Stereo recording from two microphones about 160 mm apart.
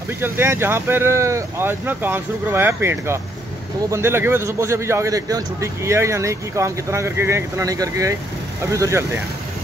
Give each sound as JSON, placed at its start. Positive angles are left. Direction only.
{"t": 0.2, "sound": "a man's voice", "side_deg": -15}